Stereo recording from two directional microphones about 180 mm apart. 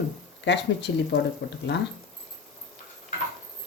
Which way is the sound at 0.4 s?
70° left (ahead or behind).